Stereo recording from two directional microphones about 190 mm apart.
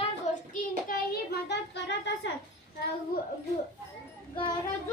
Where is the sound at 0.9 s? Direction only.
60° left (ahead or behind).